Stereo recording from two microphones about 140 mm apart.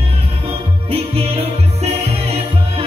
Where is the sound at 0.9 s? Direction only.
45° right (ahead or behind).